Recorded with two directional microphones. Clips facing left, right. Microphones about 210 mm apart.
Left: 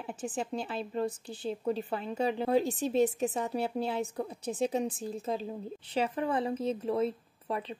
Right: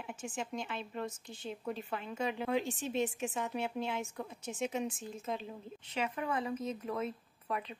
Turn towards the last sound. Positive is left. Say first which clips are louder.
# left 4 dB
turn(degrees=30)  # may be behind; listen again after turning